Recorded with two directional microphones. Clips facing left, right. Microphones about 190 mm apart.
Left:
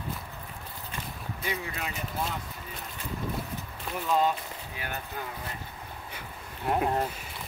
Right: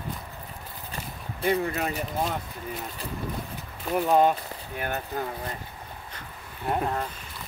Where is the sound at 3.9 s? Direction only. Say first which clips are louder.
Right 6 dB; 55° right (ahead or behind).